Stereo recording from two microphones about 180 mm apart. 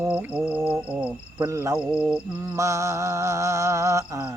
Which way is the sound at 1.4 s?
15° right (ahead or behind).